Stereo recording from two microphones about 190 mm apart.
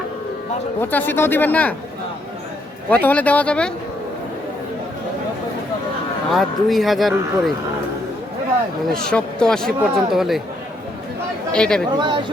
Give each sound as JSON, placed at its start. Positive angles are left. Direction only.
{"t": 0.8, "sound": "speech", "side_deg": 10}
{"t": 2.9, "sound": "speech", "side_deg": 10}
{"t": 6.3, "sound": "speech", "side_deg": 0}
{"t": 8.9, "sound": "speech", "side_deg": 5}
{"t": 11.5, "sound": "speech", "side_deg": 5}
{"t": 11.9, "sound": "speech", "side_deg": -25}